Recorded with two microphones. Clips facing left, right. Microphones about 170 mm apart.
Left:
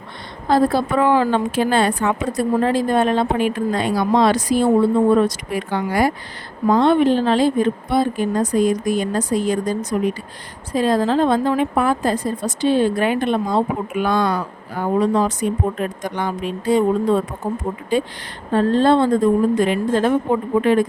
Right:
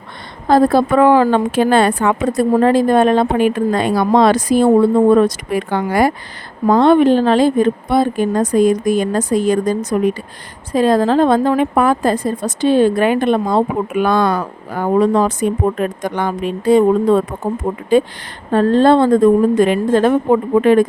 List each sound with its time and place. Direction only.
0.4 s a woman's voice: 50° right (ahead or behind)